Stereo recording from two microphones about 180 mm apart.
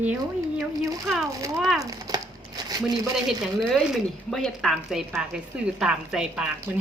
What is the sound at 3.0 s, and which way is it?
A woman's voice, centre (ahead or behind).